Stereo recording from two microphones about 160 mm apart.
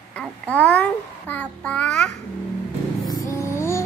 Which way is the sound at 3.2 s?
15° left (ahead or behind).